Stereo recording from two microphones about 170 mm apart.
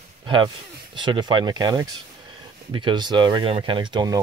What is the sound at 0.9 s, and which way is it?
Speech, 30° right (ahead or behind).